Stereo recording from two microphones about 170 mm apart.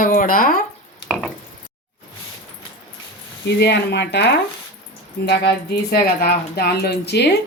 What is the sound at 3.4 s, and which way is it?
Speech, 80° left.